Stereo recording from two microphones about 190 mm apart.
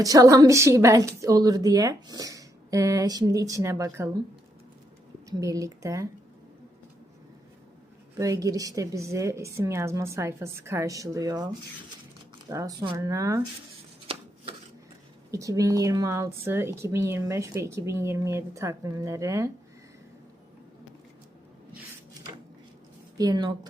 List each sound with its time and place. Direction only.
0.0 s a woman's voice: 20° right (ahead or behind)
5.3 s a woman's voice: 15° right (ahead or behind)
8.2 s a woman's voice: 15° right (ahead or behind)
12.5 s a woman's voice: 20° right (ahead or behind)
15.3 s a woman's voice: 15° right (ahead or behind)
23.1 s a woman's voice: 20° right (ahead or behind)